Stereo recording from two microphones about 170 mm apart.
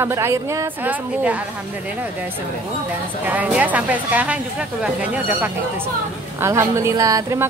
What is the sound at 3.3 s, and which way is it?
A woman's voice, 10° right (ahead or behind).